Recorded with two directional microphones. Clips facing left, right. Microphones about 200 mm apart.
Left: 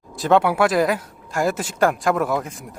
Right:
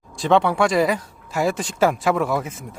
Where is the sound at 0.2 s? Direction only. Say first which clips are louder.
Left 1 dB; 5° left (ahead or behind).